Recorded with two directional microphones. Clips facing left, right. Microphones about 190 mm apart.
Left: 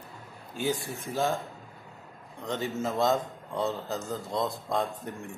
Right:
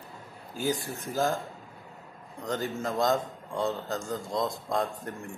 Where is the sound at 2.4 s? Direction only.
Centre (ahead or behind).